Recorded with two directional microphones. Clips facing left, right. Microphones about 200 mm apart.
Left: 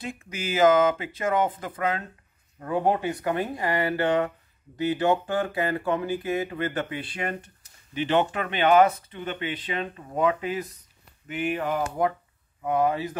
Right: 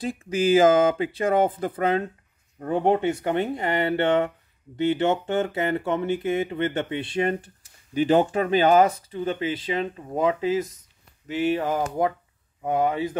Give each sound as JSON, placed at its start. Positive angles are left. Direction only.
{"t": 0.0, "sound": "speech", "side_deg": -30}